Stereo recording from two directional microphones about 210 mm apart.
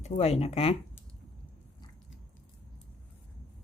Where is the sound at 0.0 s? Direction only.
30° left (ahead or behind).